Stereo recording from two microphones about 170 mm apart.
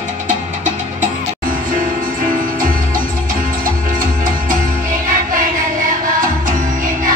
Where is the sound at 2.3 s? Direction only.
55° right (ahead or behind).